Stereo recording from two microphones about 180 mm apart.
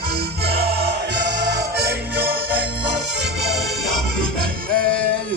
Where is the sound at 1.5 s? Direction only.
65° right (ahead or behind).